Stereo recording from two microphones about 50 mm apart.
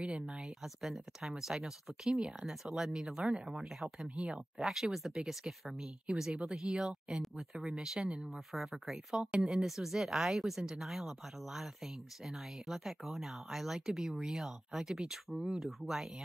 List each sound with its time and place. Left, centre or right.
0.0 s speech: right
0.4 s speech: centre
7.2 s speech: centre